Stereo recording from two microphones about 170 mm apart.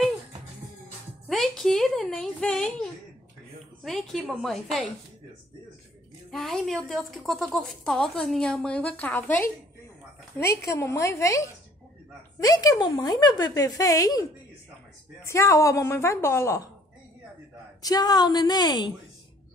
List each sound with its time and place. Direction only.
1.3 s a sound: centre (ahead or behind)
3.8 s a woman's voice: centre (ahead or behind)
6.3 s a woman's voice: centre (ahead or behind); by 14.2 s 20° left (ahead or behind)
15.2 s a woman's voice: 15° left (ahead or behind)
17.8 s a woman's voice: 25° left (ahead or behind)